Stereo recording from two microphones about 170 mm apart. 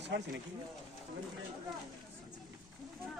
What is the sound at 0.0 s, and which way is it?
Speech, 90° right.